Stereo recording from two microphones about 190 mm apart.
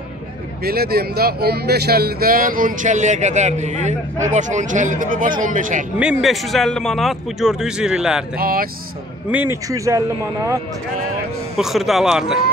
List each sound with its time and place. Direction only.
0.7 s speech: 55° right (ahead or behind)
5.9 s speech: 5° right (ahead or behind)
8.4 s speech: 50° right (ahead or behind)
9.3 s speech: 10° right (ahead or behind)
11.5 s speech: centre (ahead or behind)